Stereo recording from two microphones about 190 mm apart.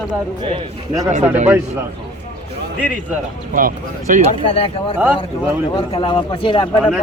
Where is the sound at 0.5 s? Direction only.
20° right (ahead or behind).